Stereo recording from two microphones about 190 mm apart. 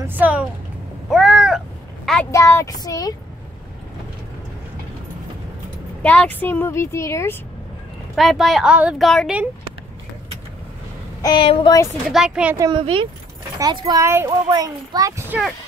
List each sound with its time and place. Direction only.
0.0 s a sound: 10° right (ahead or behind)
1.1 s cat: centre (ahead or behind)
2.3 s speech: 15° left (ahead or behind)
6.0 s speech: 10° left (ahead or behind)
8.2 s speech: centre (ahead or behind)
11.2 s speech: 25° left (ahead or behind)
12.1 s speech: 5° right (ahead or behind)
12.5 s a child's voice: 25° right (ahead or behind)